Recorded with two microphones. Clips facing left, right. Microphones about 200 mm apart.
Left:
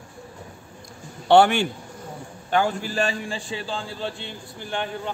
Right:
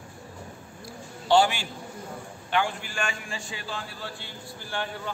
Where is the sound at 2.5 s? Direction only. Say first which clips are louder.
Left 5 dB; 40° left (ahead or behind).